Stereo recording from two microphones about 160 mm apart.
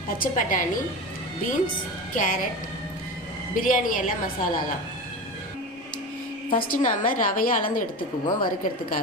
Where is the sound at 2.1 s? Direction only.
55° left (ahead or behind).